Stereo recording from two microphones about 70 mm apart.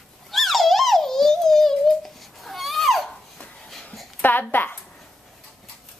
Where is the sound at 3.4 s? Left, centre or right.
Centre.